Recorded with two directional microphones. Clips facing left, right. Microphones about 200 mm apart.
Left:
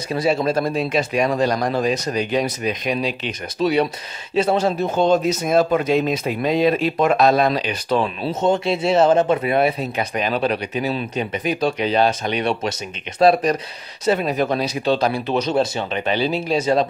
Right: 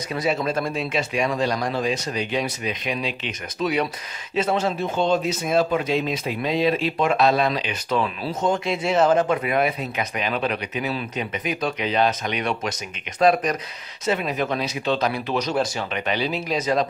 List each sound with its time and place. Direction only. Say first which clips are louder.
0.1 s speech: left 5 dB; 30° left (ahead or behind)